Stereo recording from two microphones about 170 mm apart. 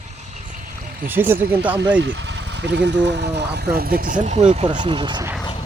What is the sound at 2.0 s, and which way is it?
Speech, 90° right.